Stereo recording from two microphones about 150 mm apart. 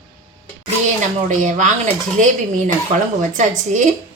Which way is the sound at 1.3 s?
55° right (ahead or behind).